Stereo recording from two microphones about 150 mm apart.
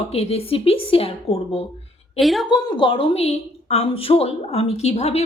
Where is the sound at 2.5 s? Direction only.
30° left (ahead or behind).